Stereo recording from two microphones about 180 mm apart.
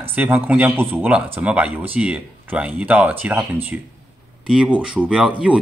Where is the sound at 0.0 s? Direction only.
10° right (ahead or behind).